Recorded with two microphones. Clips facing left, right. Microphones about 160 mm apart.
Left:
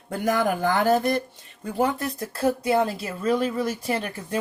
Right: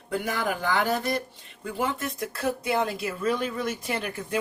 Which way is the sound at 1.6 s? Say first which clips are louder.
Left 5 dB; 35° left (ahead or behind).